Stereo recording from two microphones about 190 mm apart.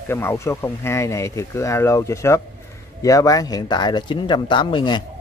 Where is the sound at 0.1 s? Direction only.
15° left (ahead or behind).